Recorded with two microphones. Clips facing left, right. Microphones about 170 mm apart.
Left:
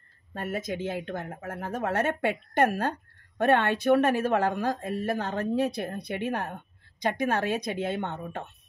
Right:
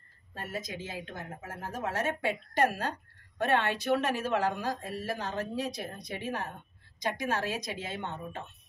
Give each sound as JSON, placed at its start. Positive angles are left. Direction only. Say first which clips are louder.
{"t": 0.3, "sound": "a woman's voice", "louder": "left 7 dB", "side_deg": 55}